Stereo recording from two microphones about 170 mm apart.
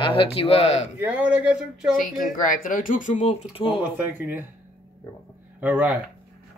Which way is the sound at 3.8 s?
10° right (ahead or behind).